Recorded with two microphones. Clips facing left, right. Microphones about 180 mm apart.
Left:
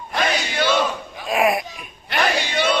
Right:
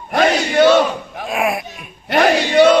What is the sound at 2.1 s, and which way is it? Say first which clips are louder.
Battle cry: right 9 dB; 45° right (ahead or behind).